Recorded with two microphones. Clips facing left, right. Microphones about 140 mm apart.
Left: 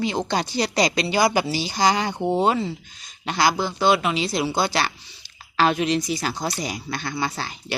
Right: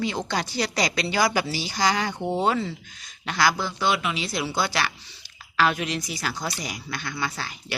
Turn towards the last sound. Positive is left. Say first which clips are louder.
# left 3 dB
turn(degrees=30)  # may be behind; listen again after turning